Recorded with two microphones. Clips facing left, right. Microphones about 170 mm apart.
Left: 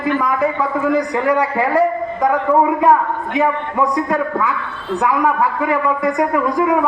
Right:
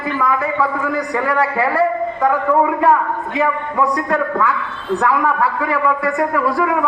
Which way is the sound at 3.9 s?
10° left (ahead or behind).